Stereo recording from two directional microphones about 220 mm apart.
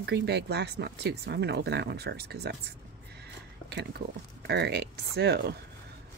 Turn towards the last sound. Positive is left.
turn(degrees=-45)  # may be behind; listen again after turning